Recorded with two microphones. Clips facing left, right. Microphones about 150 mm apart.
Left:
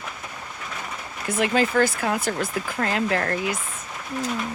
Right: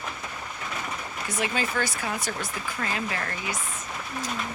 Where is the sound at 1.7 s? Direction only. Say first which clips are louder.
Left 8 dB; 50° left (ahead or behind).